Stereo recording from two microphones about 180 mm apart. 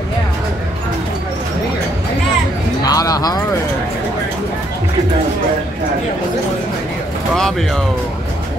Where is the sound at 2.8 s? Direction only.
20° left (ahead or behind).